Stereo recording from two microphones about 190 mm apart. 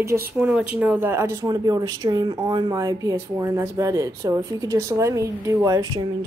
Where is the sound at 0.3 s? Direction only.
5° right (ahead or behind).